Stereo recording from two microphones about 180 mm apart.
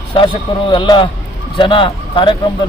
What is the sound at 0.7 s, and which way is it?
Speech, 25° left (ahead or behind).